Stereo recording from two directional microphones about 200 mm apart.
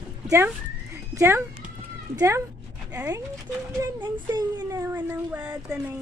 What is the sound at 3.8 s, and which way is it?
Speech, 15° right (ahead or behind).